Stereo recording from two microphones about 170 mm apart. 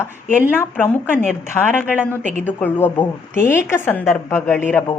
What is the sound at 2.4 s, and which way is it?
A woman's voice, 10° left (ahead or behind).